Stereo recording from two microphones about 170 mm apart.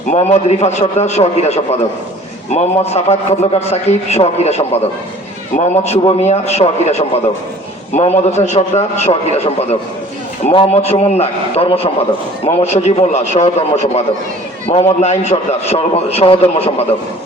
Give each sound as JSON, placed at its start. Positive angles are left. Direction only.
{"t": 0.1, "sound": "a man's voice", "side_deg": 40}